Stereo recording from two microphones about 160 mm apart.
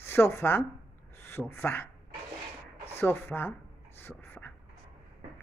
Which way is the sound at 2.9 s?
15° left (ahead or behind).